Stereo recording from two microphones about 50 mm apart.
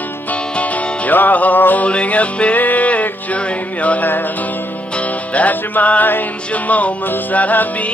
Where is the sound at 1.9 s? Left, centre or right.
Left.